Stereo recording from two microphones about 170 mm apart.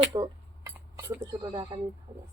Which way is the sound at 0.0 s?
20° right (ahead or behind).